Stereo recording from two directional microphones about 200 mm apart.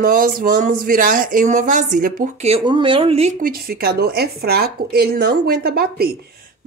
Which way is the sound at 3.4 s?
50° right (ahead or behind).